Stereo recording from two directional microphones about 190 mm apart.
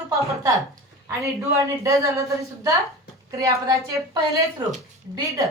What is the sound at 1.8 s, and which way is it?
A woman's voice, 15° right (ahead or behind).